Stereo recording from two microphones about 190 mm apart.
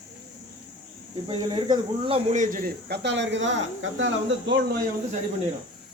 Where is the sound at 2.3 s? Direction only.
45° right (ahead or behind); by 4.7 s 65° right (ahead or behind).